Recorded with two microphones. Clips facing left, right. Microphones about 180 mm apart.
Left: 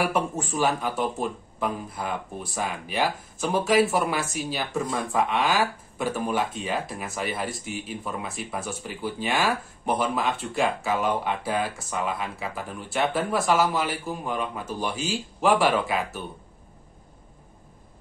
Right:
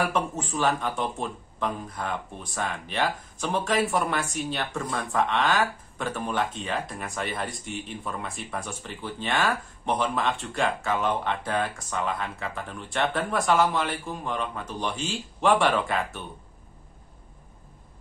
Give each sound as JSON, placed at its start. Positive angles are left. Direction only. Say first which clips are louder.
{"t": 0.1, "sound": "speech", "louder": "left 1 dB", "side_deg": 10}